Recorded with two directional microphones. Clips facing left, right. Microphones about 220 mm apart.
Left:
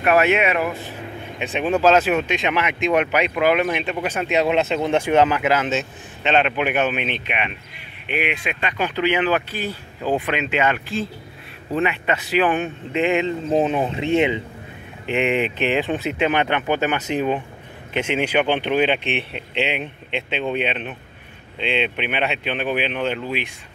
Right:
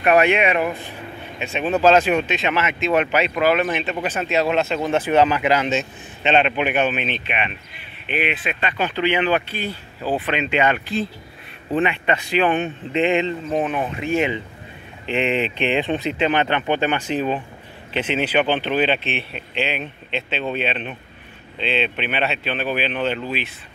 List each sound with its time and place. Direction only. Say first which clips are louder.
0.0 s a man's voice: right 1 dB; centre (ahead or behind)
0.6 s speech: right 1 dB; 15° right (ahead or behind)
1.4 s a man's voice: even; 15° left (ahead or behind)
13.5 s speech: left 3 dB; 25° left (ahead or behind)